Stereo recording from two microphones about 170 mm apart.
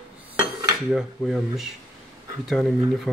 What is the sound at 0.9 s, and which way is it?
Speech, centre (ahead or behind).